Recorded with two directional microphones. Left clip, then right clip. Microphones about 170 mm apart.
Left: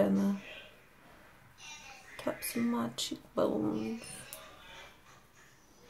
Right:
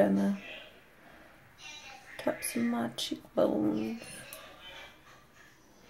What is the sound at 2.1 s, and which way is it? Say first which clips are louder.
Speech: right 3 dB; 10° left (ahead or behind).